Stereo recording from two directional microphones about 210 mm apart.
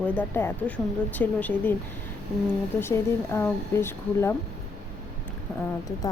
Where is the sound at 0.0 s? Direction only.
10° left (ahead or behind).